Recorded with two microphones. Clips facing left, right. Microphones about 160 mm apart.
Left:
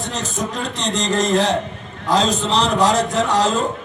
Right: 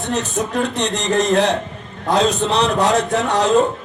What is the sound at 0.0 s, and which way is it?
A man's voice, 60° right (ahead or behind).